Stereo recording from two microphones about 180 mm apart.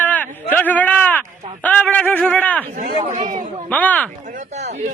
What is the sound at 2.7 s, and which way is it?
Speech, 45° right (ahead or behind).